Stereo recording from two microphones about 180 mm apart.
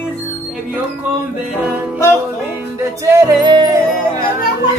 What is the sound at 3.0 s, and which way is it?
Music, 20° right (ahead or behind).